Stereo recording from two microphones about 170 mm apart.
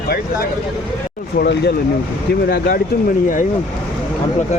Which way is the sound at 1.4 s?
75° left (ahead or behind).